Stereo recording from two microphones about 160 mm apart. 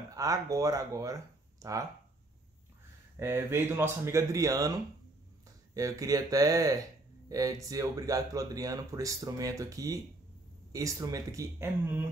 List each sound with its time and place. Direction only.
0.1 s speech: 20° right (ahead or behind)
3.2 s speech: 15° right (ahead or behind)
5.8 s speech: 20° right (ahead or behind)